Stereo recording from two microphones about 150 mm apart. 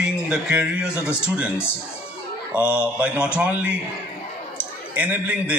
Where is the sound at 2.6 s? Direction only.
10° right (ahead or behind).